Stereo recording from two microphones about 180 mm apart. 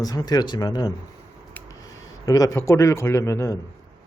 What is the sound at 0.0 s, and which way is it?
Speech, 20° left (ahead or behind).